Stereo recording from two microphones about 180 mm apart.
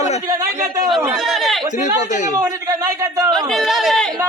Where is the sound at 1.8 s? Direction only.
40° left (ahead or behind).